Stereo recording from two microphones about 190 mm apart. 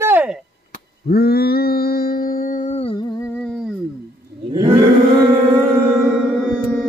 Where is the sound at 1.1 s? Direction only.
55° left (ahead or behind); by 3.7 s centre (ahead or behind).